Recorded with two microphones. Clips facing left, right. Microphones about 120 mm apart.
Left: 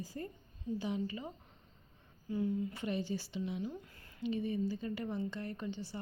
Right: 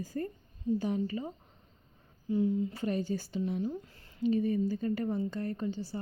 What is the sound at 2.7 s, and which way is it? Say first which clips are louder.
A woman's voice: right 5 dB; 40° right (ahead or behind).